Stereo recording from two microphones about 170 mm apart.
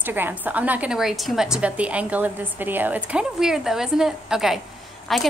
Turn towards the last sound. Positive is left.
turn(degrees=0)  # may be behind; listen again after turning